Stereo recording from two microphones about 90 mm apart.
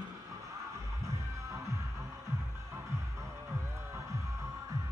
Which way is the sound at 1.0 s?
35° right (ahead or behind).